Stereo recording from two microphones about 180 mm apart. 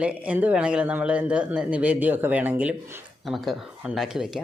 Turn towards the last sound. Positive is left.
turn(degrees=0)  # may be behind; listen again after turning